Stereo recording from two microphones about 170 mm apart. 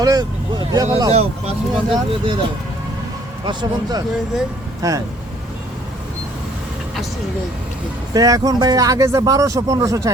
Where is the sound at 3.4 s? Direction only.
25° right (ahead or behind).